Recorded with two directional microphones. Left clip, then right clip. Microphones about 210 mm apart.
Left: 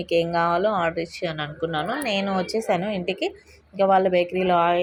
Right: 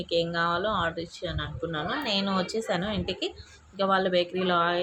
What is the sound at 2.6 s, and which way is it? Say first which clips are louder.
Speech: left 6 dB; 15° left (ahead or behind).